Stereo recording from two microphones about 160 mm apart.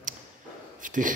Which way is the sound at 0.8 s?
55° right (ahead or behind).